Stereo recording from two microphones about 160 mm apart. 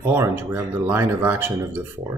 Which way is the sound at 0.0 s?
15° right (ahead or behind).